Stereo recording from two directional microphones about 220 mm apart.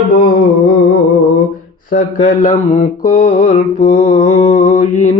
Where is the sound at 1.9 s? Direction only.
35° left (ahead or behind).